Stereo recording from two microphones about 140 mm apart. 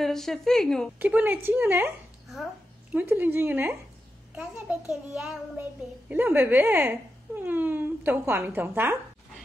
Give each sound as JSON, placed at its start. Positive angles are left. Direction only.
{"t": 0.0, "sound": "a woman's voice", "side_deg": 0}
{"t": 0.9, "sound": "child singing", "side_deg": -10}